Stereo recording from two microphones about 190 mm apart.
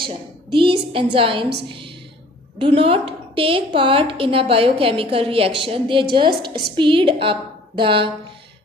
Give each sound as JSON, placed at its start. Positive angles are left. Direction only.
{"t": 0.0, "sound": "a woman's voice", "side_deg": -25}